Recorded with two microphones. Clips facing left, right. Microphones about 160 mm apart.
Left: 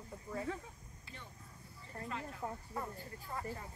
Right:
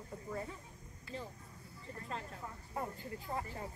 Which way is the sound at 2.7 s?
25° right (ahead or behind).